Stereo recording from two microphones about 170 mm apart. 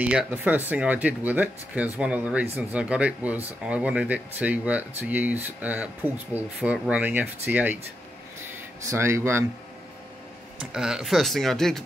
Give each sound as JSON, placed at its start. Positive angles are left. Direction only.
{"t": 0.0, "sound": "speech", "side_deg": -5}
{"t": 8.8, "sound": "speech", "side_deg": -15}
{"t": 10.7, "sound": "speech", "side_deg": -5}